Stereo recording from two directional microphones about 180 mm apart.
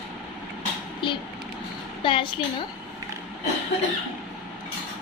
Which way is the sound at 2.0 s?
30° left (ahead or behind).